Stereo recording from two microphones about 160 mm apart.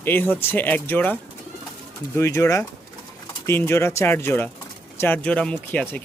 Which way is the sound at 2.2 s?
15° left (ahead or behind).